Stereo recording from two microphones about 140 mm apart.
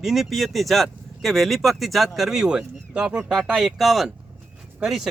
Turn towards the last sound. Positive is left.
turn(degrees=-5)  # may be behind; listen again after turning